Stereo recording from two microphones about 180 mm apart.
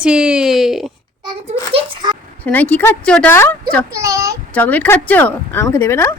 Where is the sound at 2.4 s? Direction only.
10° left (ahead or behind).